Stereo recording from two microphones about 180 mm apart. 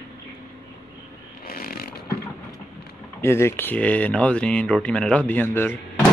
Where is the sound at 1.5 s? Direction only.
55° left (ahead or behind).